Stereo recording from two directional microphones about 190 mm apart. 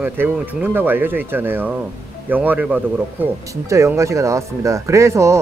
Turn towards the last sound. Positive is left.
turn(degrees=-15)  # may be behind; listen again after turning